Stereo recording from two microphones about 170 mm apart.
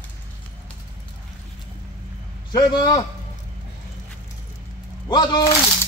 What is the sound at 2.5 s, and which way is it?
Speech, 25° left (ahead or behind).